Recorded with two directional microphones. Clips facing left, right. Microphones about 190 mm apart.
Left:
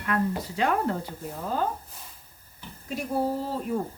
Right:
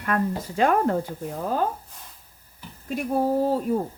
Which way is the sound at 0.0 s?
50° right (ahead or behind).